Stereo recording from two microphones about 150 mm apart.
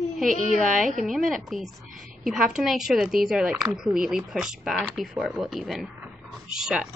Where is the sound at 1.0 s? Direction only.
Centre (ahead or behind).